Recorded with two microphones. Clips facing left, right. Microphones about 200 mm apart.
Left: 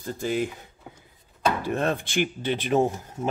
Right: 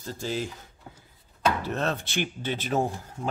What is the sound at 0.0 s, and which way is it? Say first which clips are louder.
Speech: left 5 dB; 15° left (ahead or behind).